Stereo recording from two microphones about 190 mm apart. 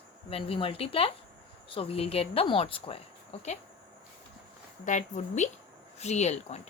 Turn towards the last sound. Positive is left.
turn(degrees=35)  # may be behind; listen again after turning